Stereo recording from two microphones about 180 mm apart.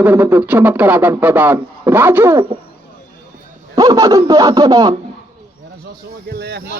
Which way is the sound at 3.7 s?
20° right (ahead or behind).